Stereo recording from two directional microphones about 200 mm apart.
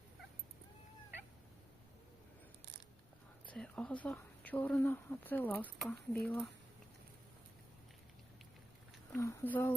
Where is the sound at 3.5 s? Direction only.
5° left (ahead or behind).